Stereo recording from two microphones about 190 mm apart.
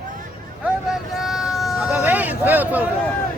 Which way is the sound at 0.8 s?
Centre (ahead or behind).